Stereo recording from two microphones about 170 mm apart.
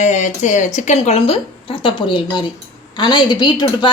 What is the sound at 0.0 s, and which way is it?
A woman's voice, 45° left (ahead or behind).